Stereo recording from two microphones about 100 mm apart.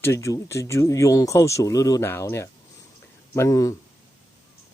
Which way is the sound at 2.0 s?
25° left (ahead or behind).